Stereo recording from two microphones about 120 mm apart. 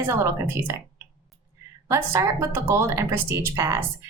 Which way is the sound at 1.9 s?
25° right (ahead or behind).